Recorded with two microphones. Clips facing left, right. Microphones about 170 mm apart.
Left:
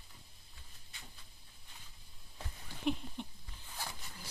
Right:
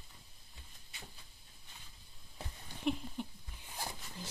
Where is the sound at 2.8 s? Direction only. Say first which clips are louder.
Even; 5° right (ahead or behind).